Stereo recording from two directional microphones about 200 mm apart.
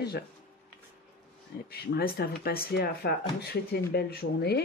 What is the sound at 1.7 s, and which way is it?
Speech, 50° left (ahead or behind).